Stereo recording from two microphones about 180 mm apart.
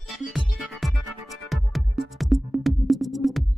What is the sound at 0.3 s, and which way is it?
Music, centre (ahead or behind).